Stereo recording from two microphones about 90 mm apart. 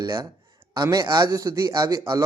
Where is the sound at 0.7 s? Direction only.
50° right (ahead or behind).